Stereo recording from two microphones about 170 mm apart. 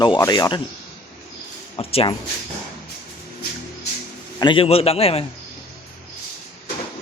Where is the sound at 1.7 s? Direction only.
30° left (ahead or behind).